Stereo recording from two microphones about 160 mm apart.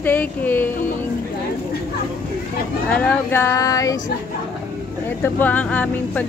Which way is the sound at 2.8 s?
10° left (ahead or behind).